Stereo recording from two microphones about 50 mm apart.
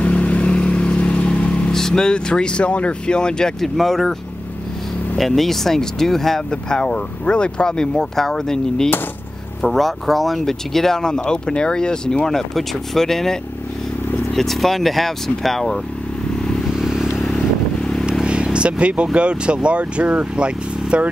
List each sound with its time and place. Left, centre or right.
0.0 s vehicle: left
3.6 s speech: centre
5.1 s speech: centre
6.5 s speech: centre
16.7 s vehicle: centre
18.2 s vehicle: centre
19.1 s speech: right